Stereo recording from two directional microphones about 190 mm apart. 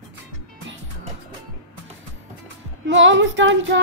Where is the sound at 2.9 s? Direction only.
75° right (ahead or behind).